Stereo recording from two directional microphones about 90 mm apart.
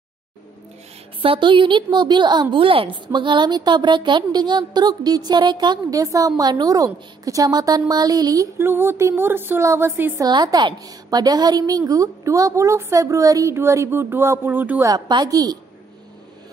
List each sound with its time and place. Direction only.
1.2 s a woman's voice: 80° right; by 2.4 s 55° right (ahead or behind)
2.5 s a woman's voice: 80° right; by 8.5 s 45° right (ahead or behind)
8.5 s a woman's voice: 25° right (ahead or behind)
10.1 s a woman's voice: 45° right (ahead or behind); by 14.9 s 20° right (ahead or behind)
14.9 s a woman's voice: 50° right (ahead or behind)